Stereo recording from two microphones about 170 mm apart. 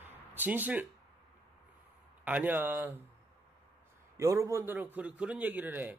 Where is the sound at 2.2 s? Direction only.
10° right (ahead or behind).